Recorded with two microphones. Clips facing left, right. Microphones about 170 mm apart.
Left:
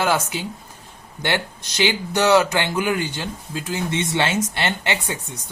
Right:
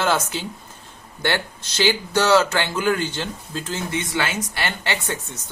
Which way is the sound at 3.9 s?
25° left (ahead or behind).